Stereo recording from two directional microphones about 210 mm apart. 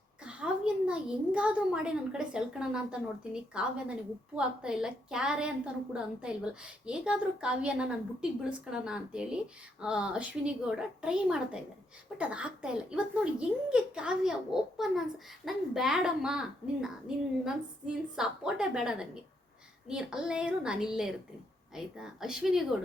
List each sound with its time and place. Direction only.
0.3 s a woman's voice: 5° right (ahead or behind)